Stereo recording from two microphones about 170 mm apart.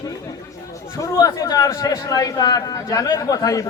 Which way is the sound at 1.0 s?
20° left (ahead or behind).